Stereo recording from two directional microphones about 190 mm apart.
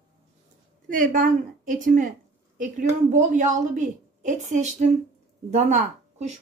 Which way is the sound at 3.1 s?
40° right (ahead or behind).